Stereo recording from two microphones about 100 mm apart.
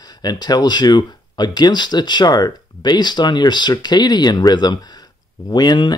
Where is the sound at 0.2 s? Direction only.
45° left (ahead or behind).